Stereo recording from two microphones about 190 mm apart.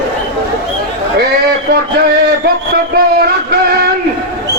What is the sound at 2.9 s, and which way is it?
Music, 55° right (ahead or behind).